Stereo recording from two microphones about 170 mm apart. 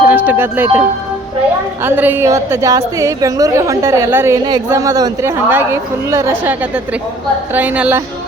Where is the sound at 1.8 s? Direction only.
10° right (ahead or behind).